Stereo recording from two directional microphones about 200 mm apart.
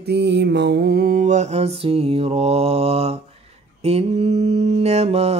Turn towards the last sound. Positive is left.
turn(degrees=-30)  # may be behind; listen again after turning